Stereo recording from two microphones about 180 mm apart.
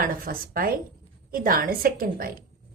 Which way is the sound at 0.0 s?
50° right (ahead or behind).